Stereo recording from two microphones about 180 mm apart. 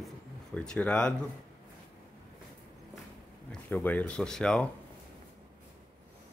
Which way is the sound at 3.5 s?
10° left (ahead or behind).